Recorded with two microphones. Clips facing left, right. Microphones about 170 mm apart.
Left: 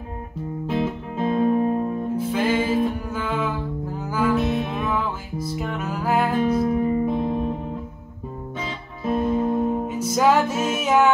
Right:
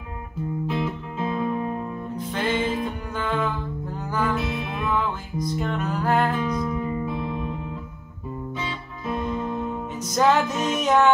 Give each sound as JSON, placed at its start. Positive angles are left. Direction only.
{"t": 0.7, "sound": "music", "side_deg": 50}
{"t": 2.1, "sound": "music", "side_deg": 5}
{"t": 6.4, "sound": "music", "side_deg": 50}
{"t": 8.5, "sound": "music", "side_deg": 50}
{"t": 9.8, "sound": "music", "side_deg": 10}